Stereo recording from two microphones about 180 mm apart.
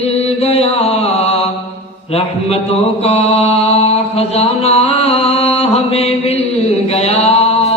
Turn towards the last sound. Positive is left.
turn(degrees=35)  # may be behind; listen again after turning